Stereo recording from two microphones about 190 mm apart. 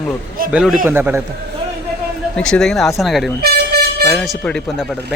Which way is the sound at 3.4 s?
55° right (ahead or behind).